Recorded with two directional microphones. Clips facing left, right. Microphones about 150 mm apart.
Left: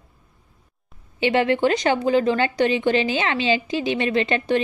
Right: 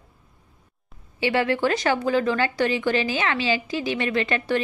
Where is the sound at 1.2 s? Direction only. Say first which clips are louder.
Left 3 dB; 20° left (ahead or behind).